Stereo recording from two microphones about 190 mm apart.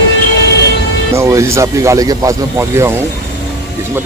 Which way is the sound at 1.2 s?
15° right (ahead or behind).